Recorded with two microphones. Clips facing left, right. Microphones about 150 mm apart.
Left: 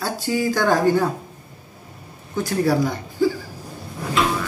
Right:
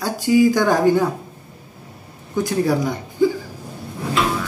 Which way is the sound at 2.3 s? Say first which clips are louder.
Right 1 dB; 20° right (ahead or behind).